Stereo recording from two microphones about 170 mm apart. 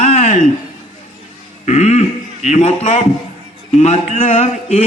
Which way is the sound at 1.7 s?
40° left (ahead or behind).